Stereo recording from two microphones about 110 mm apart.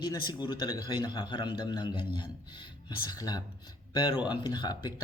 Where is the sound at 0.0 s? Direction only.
40° left (ahead or behind).